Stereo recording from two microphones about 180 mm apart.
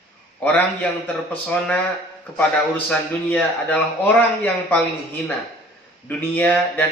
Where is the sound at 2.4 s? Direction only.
10° left (ahead or behind).